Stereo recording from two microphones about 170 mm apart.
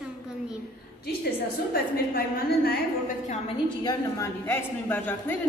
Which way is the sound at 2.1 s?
65° left (ahead or behind).